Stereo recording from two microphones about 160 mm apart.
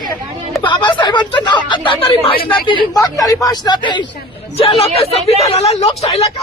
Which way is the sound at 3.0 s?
20° left (ahead or behind).